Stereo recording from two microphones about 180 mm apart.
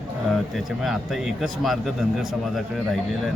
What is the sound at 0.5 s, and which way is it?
A man's voice, centre (ahead or behind).